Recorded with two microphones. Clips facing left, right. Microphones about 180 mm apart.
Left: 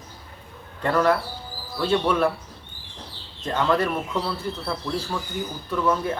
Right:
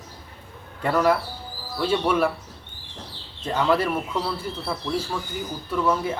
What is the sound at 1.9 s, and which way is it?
Speech, 5° right (ahead or behind).